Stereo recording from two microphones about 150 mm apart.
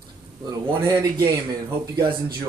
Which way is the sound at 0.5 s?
25° right (ahead or behind).